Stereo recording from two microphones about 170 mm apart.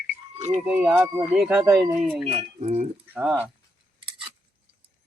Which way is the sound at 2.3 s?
35° right (ahead or behind).